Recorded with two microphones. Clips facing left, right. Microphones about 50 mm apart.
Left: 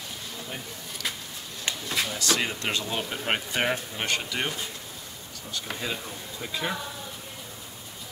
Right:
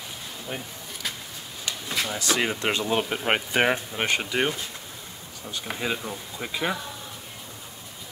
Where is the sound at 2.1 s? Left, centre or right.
Centre.